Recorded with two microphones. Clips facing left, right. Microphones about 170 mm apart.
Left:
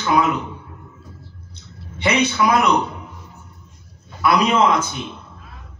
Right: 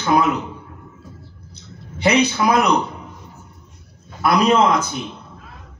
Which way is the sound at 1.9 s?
40° right (ahead or behind).